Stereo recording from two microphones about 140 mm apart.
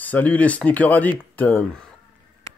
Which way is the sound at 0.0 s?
10° left (ahead or behind).